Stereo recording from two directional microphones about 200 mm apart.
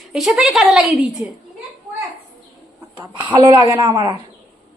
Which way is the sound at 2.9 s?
20° right (ahead or behind).